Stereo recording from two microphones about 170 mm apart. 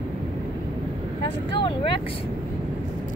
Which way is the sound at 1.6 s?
30° left (ahead or behind).